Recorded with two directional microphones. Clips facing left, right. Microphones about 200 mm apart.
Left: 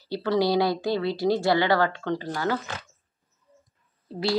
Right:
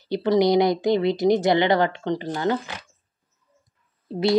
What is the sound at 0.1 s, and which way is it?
Speech, 20° right (ahead or behind).